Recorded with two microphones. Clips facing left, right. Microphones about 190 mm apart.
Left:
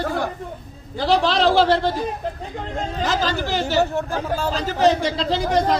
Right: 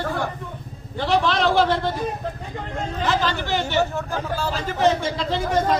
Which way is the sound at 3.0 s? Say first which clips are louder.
Even; 40° left (ahead or behind).